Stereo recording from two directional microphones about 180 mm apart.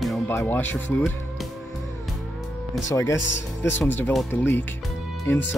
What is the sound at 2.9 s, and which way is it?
Speech, 15° left (ahead or behind).